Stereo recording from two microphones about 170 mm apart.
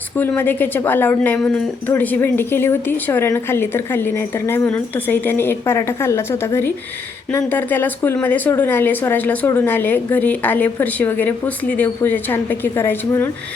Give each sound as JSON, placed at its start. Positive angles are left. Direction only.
{"t": 0.2, "sound": "speech", "side_deg": 10}